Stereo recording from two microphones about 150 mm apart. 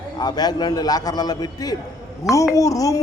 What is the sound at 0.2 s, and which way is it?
A man's voice, 25° left (ahead or behind).